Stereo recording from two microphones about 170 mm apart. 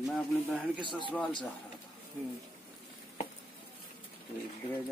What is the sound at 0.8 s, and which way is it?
Speech, 30° left (ahead or behind).